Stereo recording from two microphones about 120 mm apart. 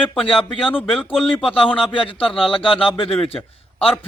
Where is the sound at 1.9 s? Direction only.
45° left (ahead or behind).